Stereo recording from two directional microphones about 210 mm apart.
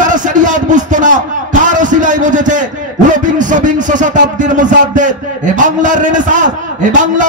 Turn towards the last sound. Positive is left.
turn(degrees=-35)  # may be behind; listen again after turning